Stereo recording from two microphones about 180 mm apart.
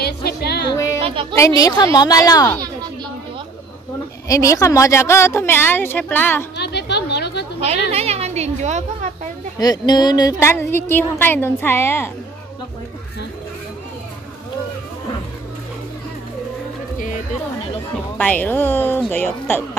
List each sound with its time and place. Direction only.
0.0 s music: 60° left (ahead or behind)
1.3 s a woman's voice: 20° left (ahead or behind)
4.3 s speech: 20° left (ahead or behind)
6.5 s a sound: 65° left (ahead or behind)
7.9 s a sound: 35° right (ahead or behind)
9.6 s speech: 20° left (ahead or behind)
18.1 s speech: 10° left (ahead or behind)